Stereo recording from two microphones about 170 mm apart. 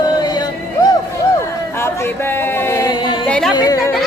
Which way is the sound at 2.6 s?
15° left (ahead or behind).